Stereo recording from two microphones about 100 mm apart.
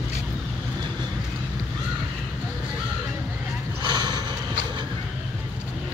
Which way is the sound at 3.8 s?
45° right (ahead or behind).